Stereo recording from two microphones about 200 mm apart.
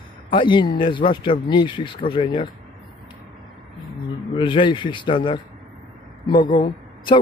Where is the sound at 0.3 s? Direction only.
25° left (ahead or behind).